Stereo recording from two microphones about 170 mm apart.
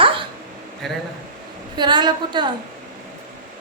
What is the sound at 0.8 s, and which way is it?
Speech, centre (ahead or behind).